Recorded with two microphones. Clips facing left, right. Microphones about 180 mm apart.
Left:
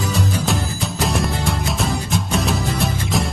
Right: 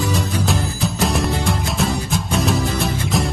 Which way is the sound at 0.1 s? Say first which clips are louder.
Even; centre (ahead or behind).